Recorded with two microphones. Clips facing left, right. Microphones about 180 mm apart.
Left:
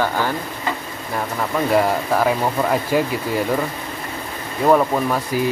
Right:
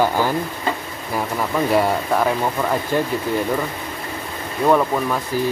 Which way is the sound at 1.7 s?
Centre (ahead or behind).